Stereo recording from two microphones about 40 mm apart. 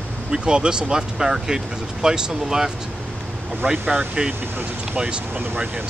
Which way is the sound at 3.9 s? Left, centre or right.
Right.